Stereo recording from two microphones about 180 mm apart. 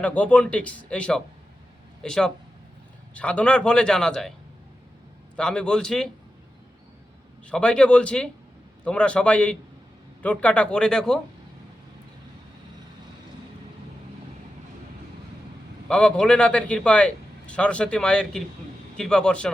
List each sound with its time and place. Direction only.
0.0 s a man's voice: 10° left (ahead or behind)
5.4 s a man's voice: 5° left (ahead or behind)
7.4 s a man's voice: 5° left (ahead or behind)
15.9 s a man's voice: 5° left (ahead or behind)